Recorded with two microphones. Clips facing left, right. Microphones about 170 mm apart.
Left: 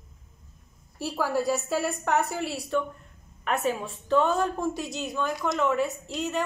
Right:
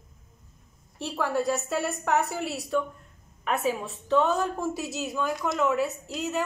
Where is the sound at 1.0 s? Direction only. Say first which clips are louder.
Even; 5° left (ahead or behind).